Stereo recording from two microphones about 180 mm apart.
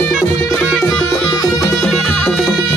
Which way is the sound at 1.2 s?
15° left (ahead or behind).